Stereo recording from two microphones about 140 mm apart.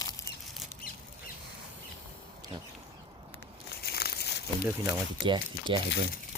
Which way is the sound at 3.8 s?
90° left.